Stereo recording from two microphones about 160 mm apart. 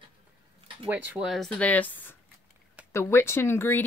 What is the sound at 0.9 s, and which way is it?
Speech, 10° right (ahead or behind).